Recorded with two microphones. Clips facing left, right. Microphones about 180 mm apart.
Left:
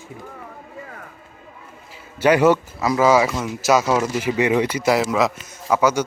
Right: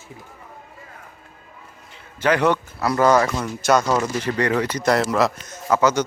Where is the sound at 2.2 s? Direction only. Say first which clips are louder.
Left 4 dB; 10° left (ahead or behind).